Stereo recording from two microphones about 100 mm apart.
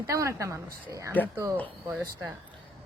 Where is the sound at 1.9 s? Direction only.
15° right (ahead or behind).